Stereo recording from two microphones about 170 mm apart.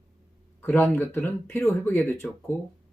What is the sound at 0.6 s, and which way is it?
Speech, 15° left (ahead or behind).